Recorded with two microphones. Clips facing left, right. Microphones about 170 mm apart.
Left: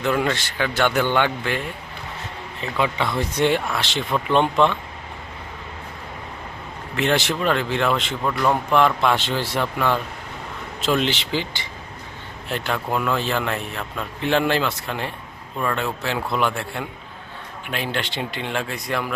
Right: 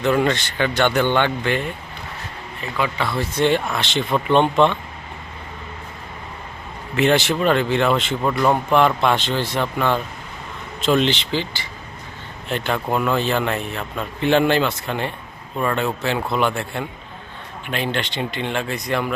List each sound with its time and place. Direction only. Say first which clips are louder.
0.0 s speech: right 3 dB; centre (ahead or behind)
2.6 s speech: left 1 dB; 25° left (ahead or behind); by 4.7 s centre (ahead or behind)
6.9 s speech: right 4 dB; centre (ahead or behind)
8.2 s a man's voice: right 2 dB; 15° right (ahead or behind)
8.7 s speech: even; centre (ahead or behind); by 11.7 s 15° left (ahead or behind)
12.5 s speech: right 3 dB; centre (ahead or behind)